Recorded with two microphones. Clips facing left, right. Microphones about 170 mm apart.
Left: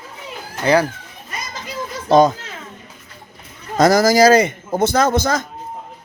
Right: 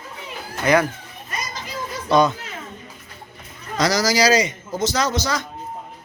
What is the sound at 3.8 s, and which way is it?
A man's voice, 50° left (ahead or behind).